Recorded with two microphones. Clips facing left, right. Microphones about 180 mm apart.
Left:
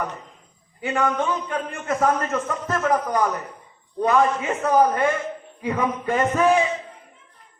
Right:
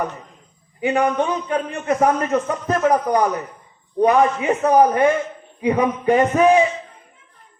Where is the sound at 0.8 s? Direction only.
15° right (ahead or behind).